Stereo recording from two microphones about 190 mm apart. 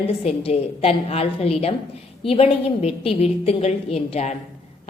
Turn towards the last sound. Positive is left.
turn(degrees=35)  # may be behind; listen again after turning